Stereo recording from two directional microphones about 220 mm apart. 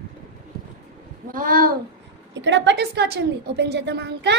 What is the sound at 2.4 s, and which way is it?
A woman's voice, 55° right (ahead or behind).